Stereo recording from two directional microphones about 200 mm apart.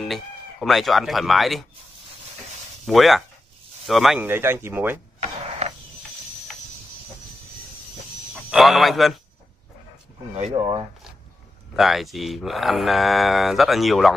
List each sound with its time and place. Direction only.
0.0 s speech: centre (ahead or behind)
2.9 s speech: centre (ahead or behind)
5.6 s cricket: 35° right (ahead or behind)
8.5 s speech: centre (ahead or behind)
10.3 s speech: 35° right (ahead or behind)
11.7 s speech: centre (ahead or behind)